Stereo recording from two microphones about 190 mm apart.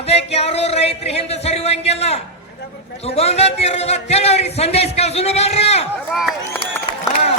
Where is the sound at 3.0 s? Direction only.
30° left (ahead or behind).